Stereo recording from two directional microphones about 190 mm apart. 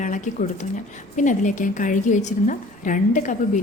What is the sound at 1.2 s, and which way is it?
A woman's voice, 40° left (ahead or behind).